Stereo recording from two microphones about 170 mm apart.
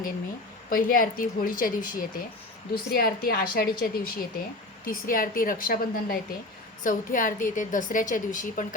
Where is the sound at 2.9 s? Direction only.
65° left (ahead or behind).